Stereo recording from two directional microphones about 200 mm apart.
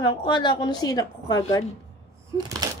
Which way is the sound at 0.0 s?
20° left (ahead or behind).